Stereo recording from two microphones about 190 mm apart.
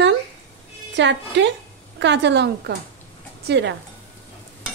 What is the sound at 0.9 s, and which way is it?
Speech, 70° right (ahead or behind).